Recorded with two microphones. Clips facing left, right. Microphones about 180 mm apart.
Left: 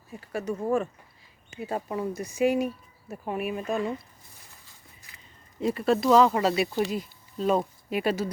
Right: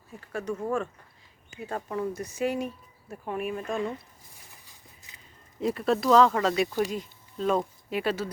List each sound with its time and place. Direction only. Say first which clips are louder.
0.3 s speech: left 3 dB; 10° left (ahead or behind)
5.1 s a sound: left 1 dB; 20° right (ahead or behind)
5.5 s speech: left 2 dB; centre (ahead or behind)
6.1 s speech: even; 10° left (ahead or behind)